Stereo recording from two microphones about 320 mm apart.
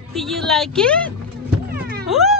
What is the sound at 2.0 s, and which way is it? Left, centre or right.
Cat, centre.